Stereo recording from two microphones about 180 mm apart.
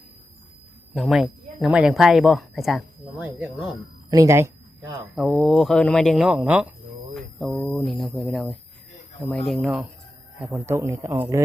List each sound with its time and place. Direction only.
0.9 s speech: centre (ahead or behind)
4.1 s a sound: 15° right (ahead or behind)
5.1 s speech: centre (ahead or behind)
10.4 s a man's voice: 10° right (ahead or behind)